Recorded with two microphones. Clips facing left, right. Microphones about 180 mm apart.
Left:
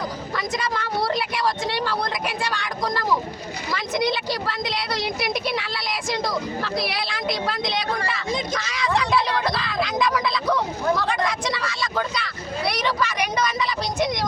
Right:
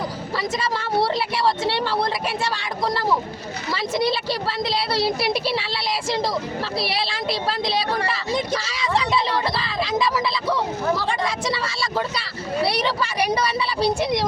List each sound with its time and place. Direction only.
0.3 s a woman's voice: 30° right (ahead or behind)